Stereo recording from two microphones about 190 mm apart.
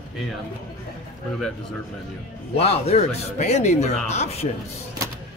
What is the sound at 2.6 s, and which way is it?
Speech, 30° left (ahead or behind).